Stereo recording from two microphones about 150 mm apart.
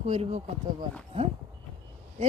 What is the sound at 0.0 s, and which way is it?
Speech, 45° right (ahead or behind).